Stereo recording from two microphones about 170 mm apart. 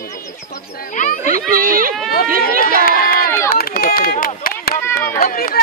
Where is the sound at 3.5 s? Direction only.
60° left (ahead or behind).